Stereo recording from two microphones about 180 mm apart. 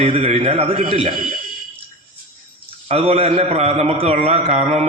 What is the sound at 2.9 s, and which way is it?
A man's voice, 35° right (ahead or behind).